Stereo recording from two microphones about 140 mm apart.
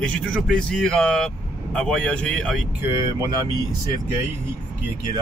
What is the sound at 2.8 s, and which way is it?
Speech, 20° right (ahead or behind).